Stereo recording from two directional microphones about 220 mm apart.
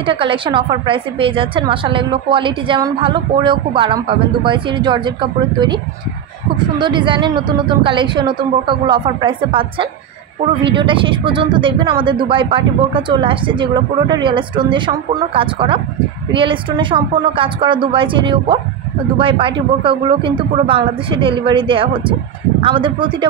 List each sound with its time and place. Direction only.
0.0 s a woman's voice: 25° right (ahead or behind)
6.8 s a woman's voice: 20° right (ahead or behind)